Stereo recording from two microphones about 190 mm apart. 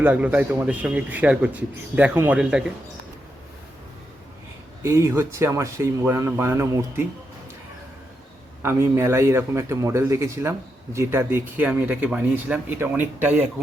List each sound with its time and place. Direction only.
0.0 s a man's voice: 10° right (ahead or behind)
4.8 s a man's voice: 15° right (ahead or behind)
8.6 s a man's voice: 15° right (ahead or behind)